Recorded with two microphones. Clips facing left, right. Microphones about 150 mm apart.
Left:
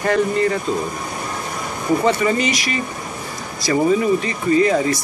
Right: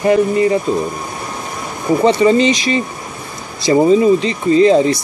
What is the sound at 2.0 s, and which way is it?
Speech, 25° right (ahead or behind).